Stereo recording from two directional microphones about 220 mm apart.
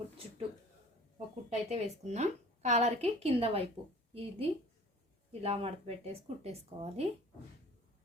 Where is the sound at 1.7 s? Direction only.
30° right (ahead or behind).